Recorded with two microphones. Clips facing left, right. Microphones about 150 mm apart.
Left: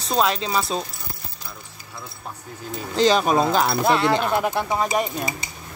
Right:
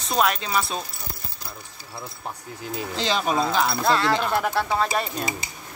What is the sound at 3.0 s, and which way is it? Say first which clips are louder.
Speech: left 6 dB; 45° left (ahead or behind).